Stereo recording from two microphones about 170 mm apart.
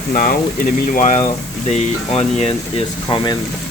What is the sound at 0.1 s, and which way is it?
Speech, 55° left (ahead or behind).